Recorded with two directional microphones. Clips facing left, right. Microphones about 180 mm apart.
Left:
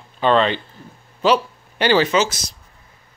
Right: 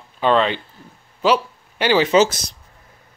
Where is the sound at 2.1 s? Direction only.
50° right (ahead or behind).